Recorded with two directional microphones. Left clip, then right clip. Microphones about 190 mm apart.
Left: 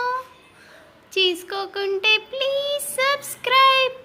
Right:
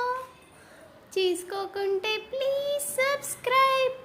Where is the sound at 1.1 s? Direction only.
Centre (ahead or behind).